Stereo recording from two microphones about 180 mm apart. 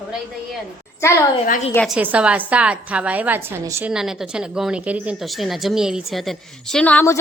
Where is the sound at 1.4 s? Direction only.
45° left (ahead or behind).